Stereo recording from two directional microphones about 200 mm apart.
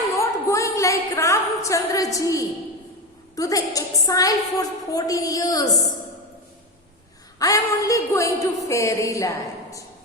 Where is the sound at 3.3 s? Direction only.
15° left (ahead or behind).